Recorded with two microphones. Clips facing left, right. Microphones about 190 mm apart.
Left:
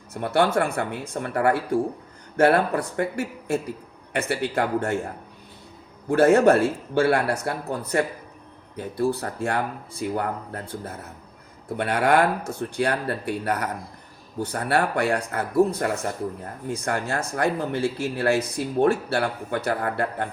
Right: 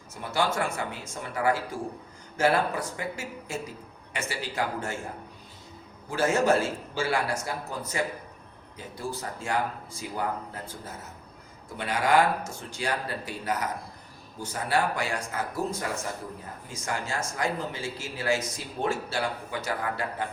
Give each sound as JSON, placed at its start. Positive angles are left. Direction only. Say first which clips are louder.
{"t": 0.1, "sound": "a man's voice", "louder": "left 7 dB", "side_deg": 60}
{"t": 6.1, "sound": "a man's voice", "louder": "left 8 dB", "side_deg": 60}